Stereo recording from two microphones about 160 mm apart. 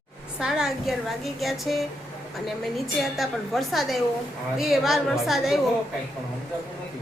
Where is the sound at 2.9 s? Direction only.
Centre (ahead or behind).